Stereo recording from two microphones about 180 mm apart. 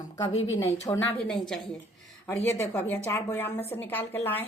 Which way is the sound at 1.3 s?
5° left (ahead or behind).